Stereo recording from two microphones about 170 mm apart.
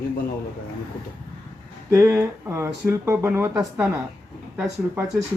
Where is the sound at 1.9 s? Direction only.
15° right (ahead or behind).